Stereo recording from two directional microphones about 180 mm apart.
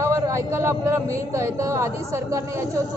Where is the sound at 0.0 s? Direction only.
15° right (ahead or behind).